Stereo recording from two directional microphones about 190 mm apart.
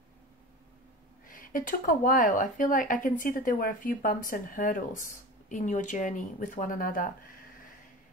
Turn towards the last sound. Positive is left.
turn(degrees=45)  # may be behind; listen again after turning